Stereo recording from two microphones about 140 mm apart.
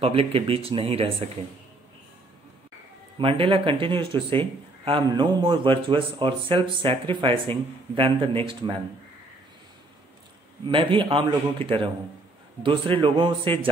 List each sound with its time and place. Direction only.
0.0 s speech: 40° right (ahead or behind)
3.2 s speech: 40° right (ahead or behind)
10.7 s speech: 40° right (ahead or behind)